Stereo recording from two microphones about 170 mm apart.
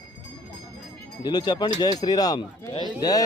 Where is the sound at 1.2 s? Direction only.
25° left (ahead or behind).